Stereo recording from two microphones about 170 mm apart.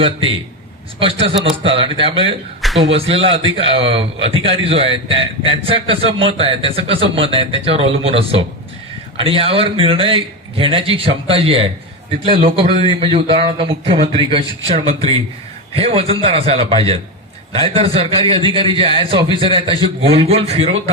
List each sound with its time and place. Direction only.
0.0 s a man's voice: 30° right (ahead or behind)
2.6 s a sound: centre (ahead or behind)
2.9 s a man's voice: 35° right (ahead or behind)
15.7 s a man's voice: 35° right (ahead or behind)